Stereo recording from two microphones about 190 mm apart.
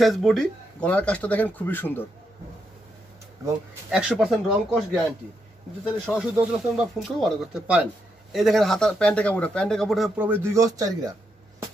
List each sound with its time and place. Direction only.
0.0 s speech: centre (ahead or behind)
3.4 s speech: 15° right (ahead or behind)
3.9 s speech: 5° right (ahead or behind)